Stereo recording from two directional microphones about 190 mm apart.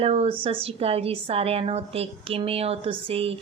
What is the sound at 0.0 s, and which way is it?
A woman's voice, 30° right (ahead or behind).